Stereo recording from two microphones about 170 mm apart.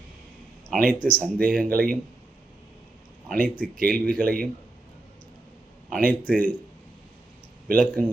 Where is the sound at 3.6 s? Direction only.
60° right (ahead or behind).